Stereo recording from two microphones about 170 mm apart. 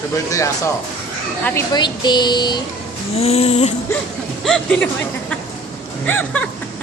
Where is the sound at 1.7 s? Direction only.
25° left (ahead or behind).